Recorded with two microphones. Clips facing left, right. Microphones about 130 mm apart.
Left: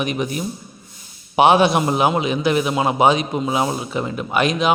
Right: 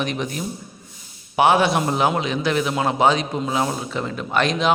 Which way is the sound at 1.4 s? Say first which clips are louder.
Left 3 dB; 20° left (ahead or behind).